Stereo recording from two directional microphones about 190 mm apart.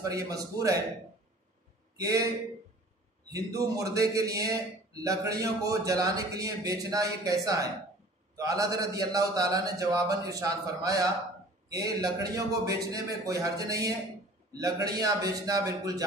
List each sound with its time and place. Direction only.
0.1 s a man's voice: 20° right (ahead or behind)
2.0 s a man's voice: 20° right (ahead or behind)
3.3 s a man's voice: 20° right (ahead or behind)